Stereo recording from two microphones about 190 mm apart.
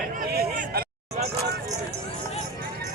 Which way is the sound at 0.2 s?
55° right (ahead or behind).